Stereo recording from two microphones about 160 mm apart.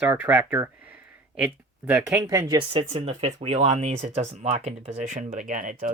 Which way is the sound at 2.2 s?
25° right (ahead or behind).